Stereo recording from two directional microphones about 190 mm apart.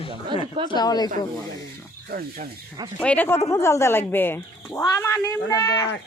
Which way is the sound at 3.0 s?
5° left (ahead or behind).